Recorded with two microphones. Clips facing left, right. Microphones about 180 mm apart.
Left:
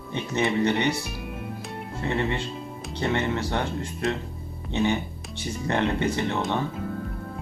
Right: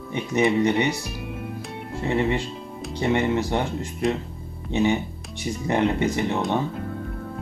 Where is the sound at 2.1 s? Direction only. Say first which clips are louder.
Right 4 dB; 15° right (ahead or behind).